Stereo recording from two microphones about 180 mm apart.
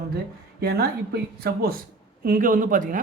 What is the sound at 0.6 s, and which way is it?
Speech, 60° right (ahead or behind).